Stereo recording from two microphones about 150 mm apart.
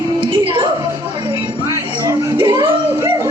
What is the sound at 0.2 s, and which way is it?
Music, 35° right (ahead or behind).